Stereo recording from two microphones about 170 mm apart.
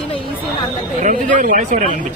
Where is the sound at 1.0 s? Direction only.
50° right (ahead or behind).